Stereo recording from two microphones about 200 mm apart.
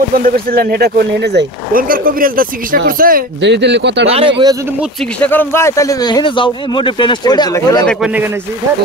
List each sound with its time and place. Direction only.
0.1 s speech: 45° right (ahead or behind)
3.3 s speech: 60° right (ahead or behind)
4.1 s speech: 25° right (ahead or behind)
5.2 s a man's voice: 10° left (ahead or behind)
7.9 s speech: 5° right (ahead or behind)